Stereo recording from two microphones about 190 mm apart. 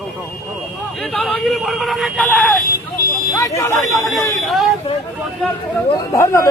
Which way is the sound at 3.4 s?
15° left (ahead or behind).